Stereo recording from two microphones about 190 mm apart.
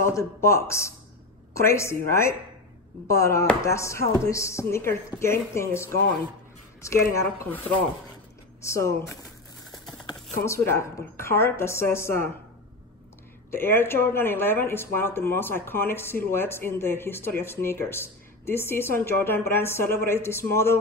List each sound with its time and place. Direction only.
0.0 s speech: 15° left (ahead or behind)
10.3 s speech: 15° left (ahead or behind)
13.5 s speech: 10° left (ahead or behind)